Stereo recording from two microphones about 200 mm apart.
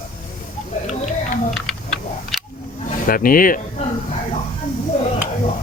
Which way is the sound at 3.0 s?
45° left (ahead or behind).